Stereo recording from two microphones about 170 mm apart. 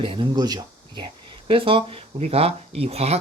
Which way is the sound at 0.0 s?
30° right (ahead or behind).